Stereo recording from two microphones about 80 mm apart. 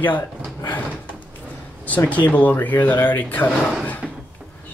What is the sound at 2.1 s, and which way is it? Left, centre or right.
Speech, centre.